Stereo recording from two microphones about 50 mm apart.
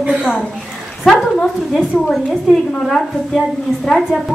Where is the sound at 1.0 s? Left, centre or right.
Centre.